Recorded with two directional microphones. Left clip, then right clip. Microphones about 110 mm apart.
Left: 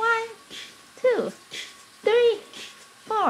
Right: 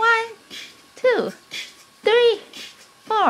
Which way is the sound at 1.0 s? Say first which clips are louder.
Right 3 dB; 30° right (ahead or behind).